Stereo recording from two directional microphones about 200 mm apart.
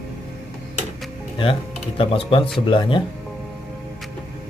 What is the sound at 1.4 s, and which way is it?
Speech, 25° left (ahead or behind).